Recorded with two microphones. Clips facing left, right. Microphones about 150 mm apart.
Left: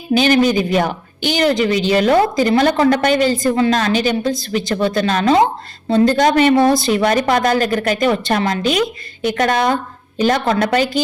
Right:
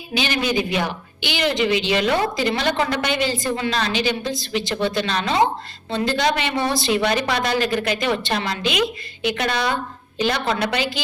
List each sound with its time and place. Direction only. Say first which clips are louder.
0.1 s speech: left 9 dB; 45° left (ahead or behind)